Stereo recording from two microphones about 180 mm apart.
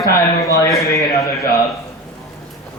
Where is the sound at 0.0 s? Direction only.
20° left (ahead or behind).